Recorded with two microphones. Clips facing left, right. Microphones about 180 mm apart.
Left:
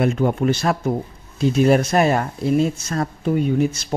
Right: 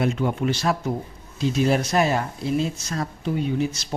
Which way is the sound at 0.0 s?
50° left (ahead or behind).